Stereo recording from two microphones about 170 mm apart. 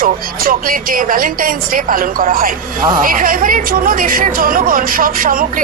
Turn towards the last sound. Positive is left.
turn(degrees=-55)  # may be behind; listen again after turning